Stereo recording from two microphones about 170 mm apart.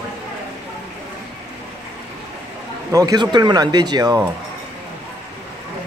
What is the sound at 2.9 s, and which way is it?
Speech, 20° right (ahead or behind).